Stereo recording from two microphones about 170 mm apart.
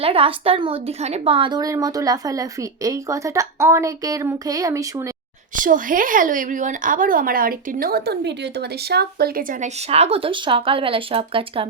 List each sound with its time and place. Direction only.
0.0 s a woman's voice: 35° right (ahead or behind); by 5.1 s 20° right (ahead or behind)
5.5 s a woman's voice: 50° right (ahead or behind); by 11.7 s 30° right (ahead or behind)